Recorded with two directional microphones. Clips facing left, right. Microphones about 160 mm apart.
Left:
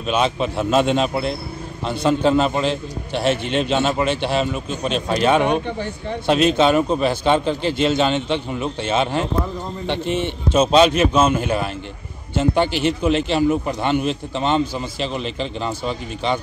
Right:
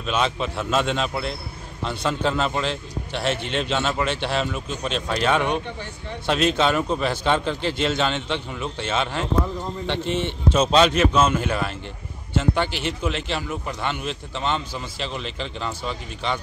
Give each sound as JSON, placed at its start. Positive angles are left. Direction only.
{"t": 0.0, "sound": "a man's voice", "side_deg": 10}
{"t": 12.8, "sound": "a man's voice", "side_deg": 20}